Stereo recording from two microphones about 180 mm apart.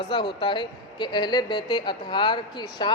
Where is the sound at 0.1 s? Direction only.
25° left (ahead or behind).